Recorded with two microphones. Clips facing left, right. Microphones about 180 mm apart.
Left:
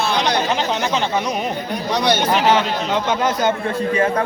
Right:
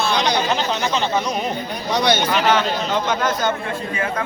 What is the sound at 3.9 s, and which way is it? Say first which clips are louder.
Speech: left 7 dB; 35° left (ahead or behind).